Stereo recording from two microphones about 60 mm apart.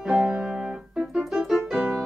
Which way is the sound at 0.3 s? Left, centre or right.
Centre.